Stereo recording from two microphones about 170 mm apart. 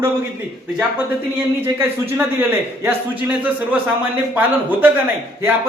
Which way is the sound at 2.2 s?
15° right (ahead or behind).